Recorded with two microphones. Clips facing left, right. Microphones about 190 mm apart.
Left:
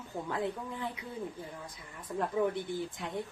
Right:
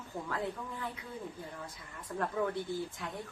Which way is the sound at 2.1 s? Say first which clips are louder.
Left 2 dB; 15° left (ahead or behind).